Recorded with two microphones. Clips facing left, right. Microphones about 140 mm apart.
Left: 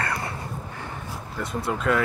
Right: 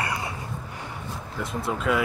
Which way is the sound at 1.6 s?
Centre (ahead or behind).